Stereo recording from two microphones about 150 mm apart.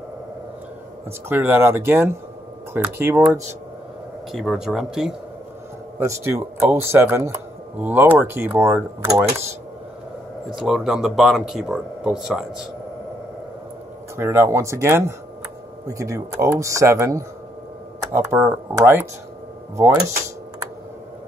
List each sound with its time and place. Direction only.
1.3 s speech: 15° right (ahead or behind)
4.3 s speech: centre (ahead or behind)
5.9 s speech: 20° right (ahead or behind)
10.5 s speech: 5° right (ahead or behind)
14.1 s speech: 15° right (ahead or behind)